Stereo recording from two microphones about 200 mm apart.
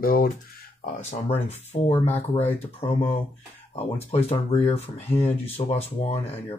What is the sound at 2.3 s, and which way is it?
Speech, 30° left (ahead or behind).